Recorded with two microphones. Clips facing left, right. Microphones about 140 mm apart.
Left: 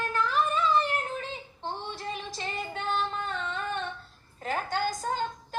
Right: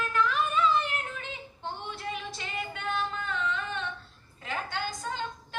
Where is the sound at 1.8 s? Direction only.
35° left (ahead or behind).